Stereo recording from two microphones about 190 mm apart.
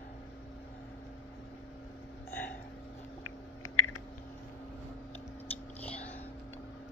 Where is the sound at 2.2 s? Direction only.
10° left (ahead or behind).